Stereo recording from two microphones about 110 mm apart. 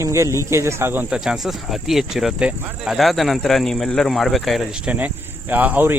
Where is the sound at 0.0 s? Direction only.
25° right (ahead or behind).